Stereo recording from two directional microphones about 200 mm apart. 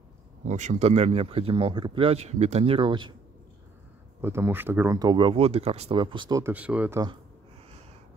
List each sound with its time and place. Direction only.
0.5 s speech: 35° right (ahead or behind)
4.2 s speech: 10° right (ahead or behind)
6.4 s speech: 5° right (ahead or behind)